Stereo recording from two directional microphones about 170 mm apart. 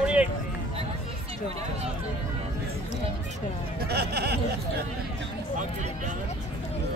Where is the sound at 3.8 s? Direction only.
70° right (ahead or behind).